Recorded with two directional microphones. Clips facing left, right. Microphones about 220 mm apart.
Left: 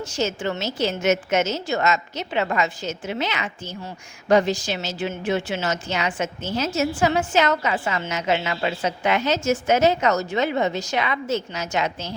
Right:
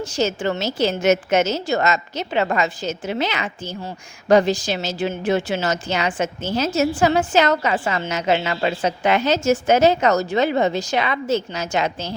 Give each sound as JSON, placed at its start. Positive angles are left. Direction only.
{"t": 0.0, "sound": "a woman's voice", "side_deg": -35}